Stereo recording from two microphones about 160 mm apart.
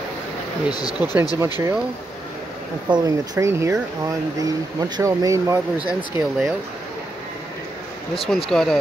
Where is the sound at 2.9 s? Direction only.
20° right (ahead or behind).